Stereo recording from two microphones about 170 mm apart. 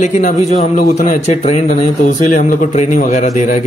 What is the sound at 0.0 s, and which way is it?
A man's voice, 45° left (ahead or behind).